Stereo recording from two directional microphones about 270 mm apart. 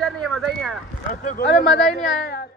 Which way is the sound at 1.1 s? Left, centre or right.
Left.